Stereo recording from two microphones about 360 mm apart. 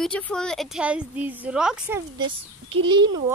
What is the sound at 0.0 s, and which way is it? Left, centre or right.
A woman's voice, centre.